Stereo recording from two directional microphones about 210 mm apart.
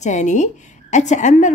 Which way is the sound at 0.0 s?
35° left (ahead or behind).